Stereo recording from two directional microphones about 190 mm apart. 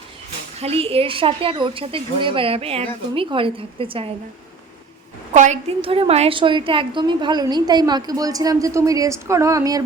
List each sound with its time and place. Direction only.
0.6 s a woman's voice: 30° right (ahead or behind)
5.3 s a woman's voice: 40° right (ahead or behind); by 9.8 s 20° right (ahead or behind)